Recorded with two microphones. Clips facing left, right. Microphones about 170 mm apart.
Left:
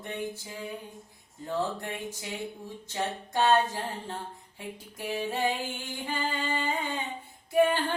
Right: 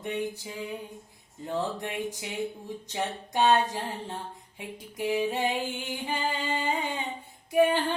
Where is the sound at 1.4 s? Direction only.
15° right (ahead or behind).